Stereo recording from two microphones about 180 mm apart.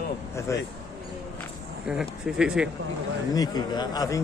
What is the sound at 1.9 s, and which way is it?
Speech, 5° right (ahead or behind).